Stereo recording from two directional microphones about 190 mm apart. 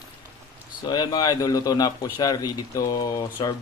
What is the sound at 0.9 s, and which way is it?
Speech, 20° left (ahead or behind).